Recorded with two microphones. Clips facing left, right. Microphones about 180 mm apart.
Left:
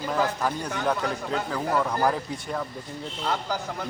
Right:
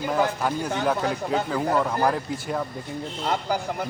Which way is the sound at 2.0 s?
Centre (ahead or behind).